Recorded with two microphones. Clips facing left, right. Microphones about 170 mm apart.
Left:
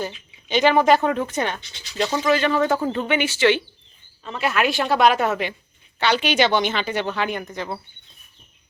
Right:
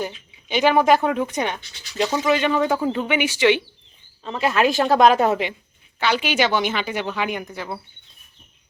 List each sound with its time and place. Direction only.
0.4 s a woman's voice: 10° right (ahead or behind)
4.2 s speech: 30° right (ahead or behind)
6.0 s a woman's voice: 5° right (ahead or behind)